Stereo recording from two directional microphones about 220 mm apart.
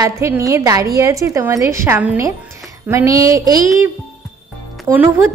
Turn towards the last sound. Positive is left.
turn(degrees=-10)  # may be behind; listen again after turning